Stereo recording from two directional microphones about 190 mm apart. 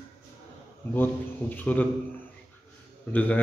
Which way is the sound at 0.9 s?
10° left (ahead or behind).